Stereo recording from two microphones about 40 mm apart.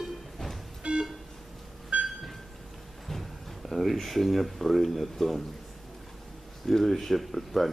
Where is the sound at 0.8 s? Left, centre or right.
Right.